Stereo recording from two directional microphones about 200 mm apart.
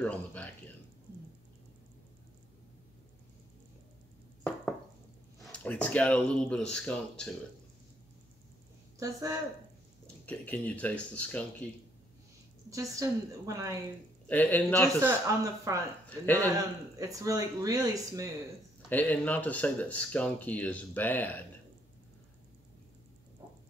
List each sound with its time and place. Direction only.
0.0 s speech: 5° left (ahead or behind)
4.4 s a sound: 5° left (ahead or behind)
5.4 s speech: 5° left (ahead or behind)
9.0 s speech: 15° right (ahead or behind)
10.2 s speech: 5° left (ahead or behind)
12.6 s speech: 15° right (ahead or behind)
14.2 s speech: 10° left (ahead or behind)
15.0 s speech: 15° right (ahead or behind)
18.9 s speech: 10° left (ahead or behind)